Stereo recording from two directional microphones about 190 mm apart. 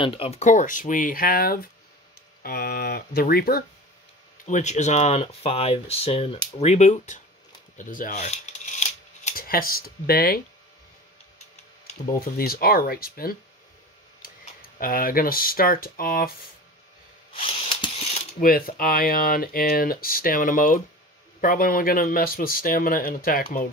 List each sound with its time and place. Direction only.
0.0 s speech: 30° left (ahead or behind); by 3.6 s 55° left (ahead or behind)
4.5 s speech: 40° left (ahead or behind)
12.4 s speech: 50° left (ahead or behind)
14.8 s speech: 50° left (ahead or behind)
17.4 s a sound: 30° left (ahead or behind)
18.4 s speech: 50° left (ahead or behind)